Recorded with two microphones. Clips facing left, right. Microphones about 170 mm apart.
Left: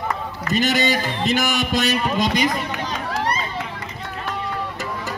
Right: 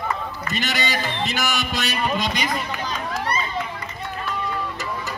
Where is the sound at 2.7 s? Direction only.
75° left (ahead or behind).